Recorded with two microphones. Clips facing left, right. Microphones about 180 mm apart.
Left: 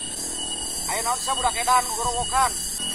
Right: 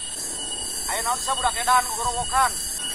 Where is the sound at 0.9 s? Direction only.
10° left (ahead or behind).